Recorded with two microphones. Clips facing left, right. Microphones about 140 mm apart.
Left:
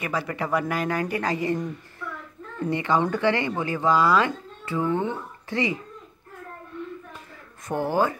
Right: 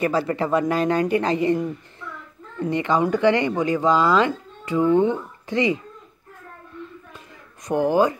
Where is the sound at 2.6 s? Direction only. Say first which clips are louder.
Right 3 dB; 20° right (ahead or behind).